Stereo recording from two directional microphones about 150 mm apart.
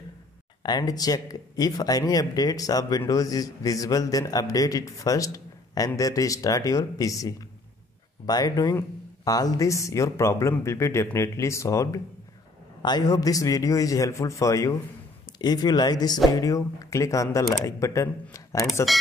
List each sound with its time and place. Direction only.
0.7 s a man's voice: 25° left (ahead or behind)